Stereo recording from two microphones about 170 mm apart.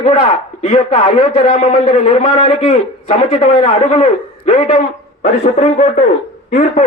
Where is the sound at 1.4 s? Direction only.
50° left (ahead or behind).